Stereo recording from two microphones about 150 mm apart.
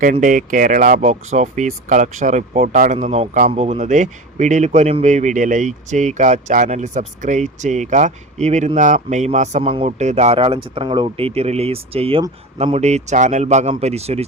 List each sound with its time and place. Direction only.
0.0 s speech: 60° right (ahead or behind); by 14.3 s 45° right (ahead or behind)